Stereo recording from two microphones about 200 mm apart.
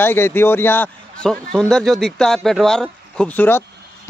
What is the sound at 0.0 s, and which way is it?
Speech, 10° left (ahead or behind).